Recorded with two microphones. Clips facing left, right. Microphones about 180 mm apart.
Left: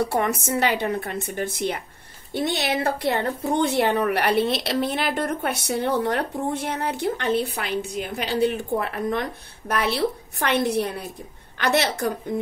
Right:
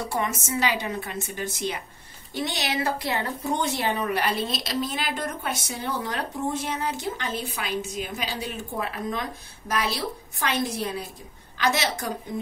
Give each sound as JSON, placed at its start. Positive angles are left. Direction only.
{"t": 0.0, "sound": "speech", "side_deg": 60}